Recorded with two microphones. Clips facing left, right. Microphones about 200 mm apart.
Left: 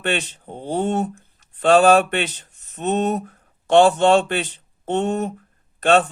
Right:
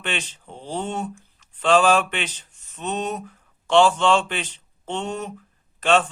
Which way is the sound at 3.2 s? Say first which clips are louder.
Left 5 dB; 55° left (ahead or behind).